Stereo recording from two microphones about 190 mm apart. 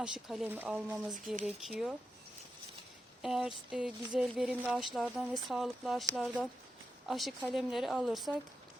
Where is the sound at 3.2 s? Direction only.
Centre (ahead or behind).